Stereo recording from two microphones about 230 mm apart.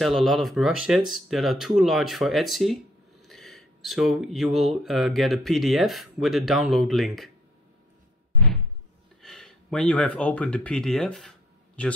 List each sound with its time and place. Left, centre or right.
0.0 s speech: centre
9.2 s speech: centre